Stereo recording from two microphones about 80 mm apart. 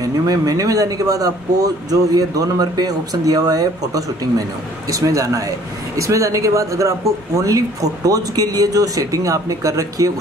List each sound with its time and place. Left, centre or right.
0.0 s speech: right